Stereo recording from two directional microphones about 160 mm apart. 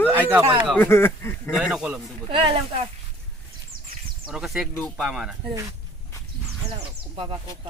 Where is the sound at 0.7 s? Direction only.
15° left (ahead or behind).